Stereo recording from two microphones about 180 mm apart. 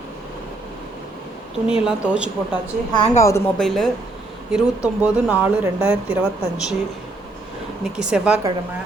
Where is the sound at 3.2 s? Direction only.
15° left (ahead or behind).